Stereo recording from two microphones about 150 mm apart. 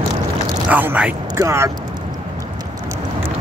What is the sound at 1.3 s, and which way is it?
Speech, 20° right (ahead or behind).